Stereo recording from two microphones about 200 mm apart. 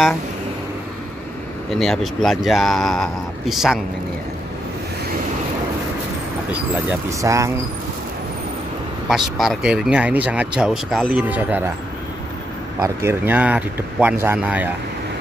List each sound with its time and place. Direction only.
1.8 s speech: centre (ahead or behind)
6.9 s speech: 15° right (ahead or behind)
9.1 s speech: centre (ahead or behind)
12.8 s speech: 10° right (ahead or behind)